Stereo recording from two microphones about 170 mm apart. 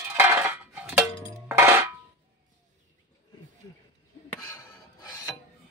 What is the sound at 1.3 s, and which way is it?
Cowbell, 15° right (ahead or behind).